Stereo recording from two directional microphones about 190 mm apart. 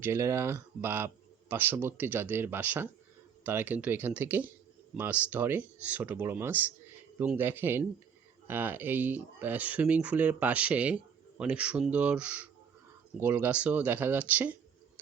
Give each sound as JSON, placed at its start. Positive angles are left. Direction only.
{"t": 0.0, "sound": "speech", "side_deg": -15}